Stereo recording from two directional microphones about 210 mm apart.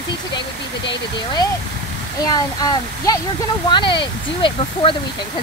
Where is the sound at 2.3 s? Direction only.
20° left (ahead or behind).